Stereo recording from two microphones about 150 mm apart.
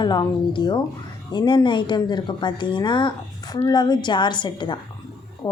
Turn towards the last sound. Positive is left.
turn(degrees=25)  # may be behind; listen again after turning